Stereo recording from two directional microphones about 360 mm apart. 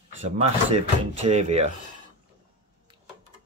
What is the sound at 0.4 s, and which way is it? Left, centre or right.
Speech, centre.